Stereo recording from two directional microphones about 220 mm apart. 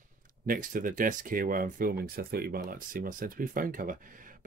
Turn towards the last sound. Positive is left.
turn(degrees=-40)  # may be behind; listen again after turning